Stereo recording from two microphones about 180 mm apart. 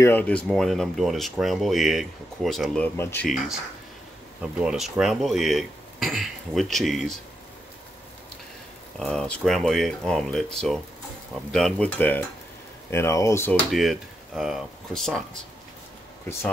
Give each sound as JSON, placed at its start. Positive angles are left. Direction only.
{"t": 0.0, "sound": "speech", "side_deg": 10}
{"t": 4.4, "sound": "speech", "side_deg": -5}
{"t": 9.0, "sound": "speech", "side_deg": 5}
{"t": 13.7, "sound": "speech", "side_deg": 0}